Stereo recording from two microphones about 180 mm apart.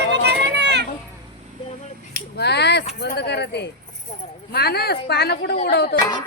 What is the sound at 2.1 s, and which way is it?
A woman's voice, 65° left (ahead or behind).